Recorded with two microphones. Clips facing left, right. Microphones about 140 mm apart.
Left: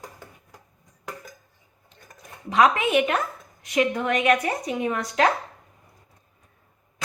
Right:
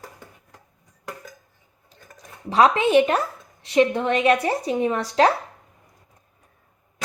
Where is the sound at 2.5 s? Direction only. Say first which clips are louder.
Right 2 dB; 30° right (ahead or behind).